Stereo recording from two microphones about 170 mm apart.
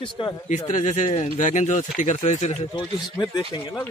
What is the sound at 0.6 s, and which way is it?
Speech, 45° left (ahead or behind).